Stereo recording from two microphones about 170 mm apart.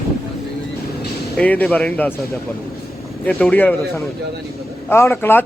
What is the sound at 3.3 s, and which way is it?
Speech, 10° left (ahead or behind).